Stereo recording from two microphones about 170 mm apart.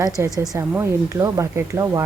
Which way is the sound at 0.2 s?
15° right (ahead or behind).